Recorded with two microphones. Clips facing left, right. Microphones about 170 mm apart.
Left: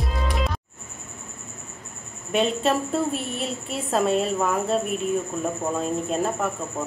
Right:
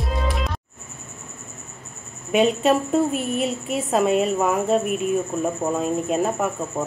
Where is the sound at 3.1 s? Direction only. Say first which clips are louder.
Right 4 dB; 35° left (ahead or behind).